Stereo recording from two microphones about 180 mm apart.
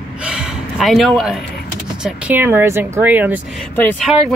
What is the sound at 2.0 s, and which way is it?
Speech, 10° right (ahead or behind).